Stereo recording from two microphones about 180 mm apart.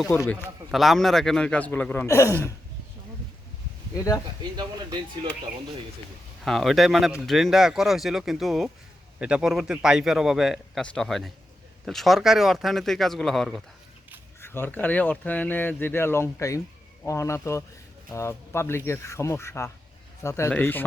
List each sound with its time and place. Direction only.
0.2 s speech: 10° left (ahead or behind)
0.7 s speech: centre (ahead or behind); by 2.5 s 15° left (ahead or behind)
3.9 s speech: 20° left (ahead or behind)
4.5 s speech: 25° right (ahead or behind)
6.4 s a man's voice: centre (ahead or behind)
14.4 s speech: 10° left (ahead or behind)